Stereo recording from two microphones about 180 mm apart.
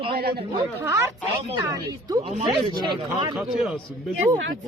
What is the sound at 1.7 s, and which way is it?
Speech, 25° right (ahead or behind).